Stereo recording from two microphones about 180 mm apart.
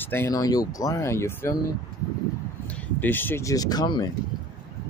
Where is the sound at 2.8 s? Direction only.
10° left (ahead or behind).